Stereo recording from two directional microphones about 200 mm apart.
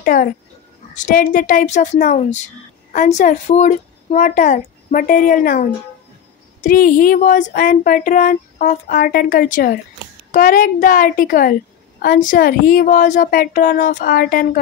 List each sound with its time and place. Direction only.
0.0 s a woman's voice: 45° left (ahead or behind)